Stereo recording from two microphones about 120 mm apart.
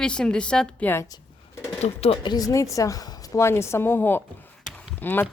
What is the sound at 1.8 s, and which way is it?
Speech, 60° left (ahead or behind).